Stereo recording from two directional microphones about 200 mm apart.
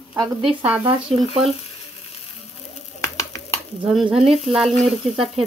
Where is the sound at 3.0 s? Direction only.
15° left (ahead or behind).